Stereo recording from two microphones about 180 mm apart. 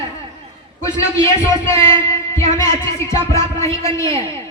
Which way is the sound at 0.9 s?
15° left (ahead or behind).